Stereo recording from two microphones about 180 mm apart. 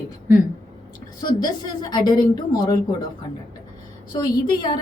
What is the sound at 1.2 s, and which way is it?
A woman's voice, 25° left (ahead or behind).